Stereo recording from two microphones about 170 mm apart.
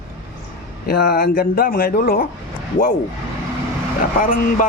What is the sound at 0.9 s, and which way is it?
Speech, 60° left (ahead or behind).